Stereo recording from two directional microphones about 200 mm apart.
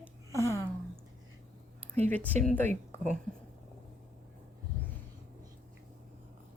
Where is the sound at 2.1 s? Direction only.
10° left (ahead or behind).